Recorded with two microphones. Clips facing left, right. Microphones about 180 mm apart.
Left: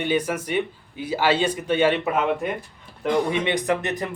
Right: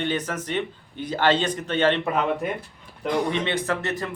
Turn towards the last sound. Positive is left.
turn(degrees=15)  # may be behind; listen again after turning